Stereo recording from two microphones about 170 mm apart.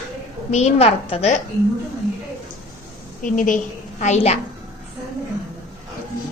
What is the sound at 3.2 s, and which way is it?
Speech, 50° left (ahead or behind).